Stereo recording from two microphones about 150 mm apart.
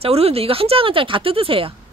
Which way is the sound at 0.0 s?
40° right (ahead or behind).